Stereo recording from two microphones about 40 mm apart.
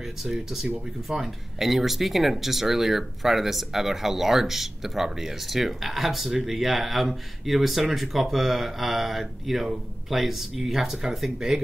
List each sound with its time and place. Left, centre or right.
0.2 s speech: centre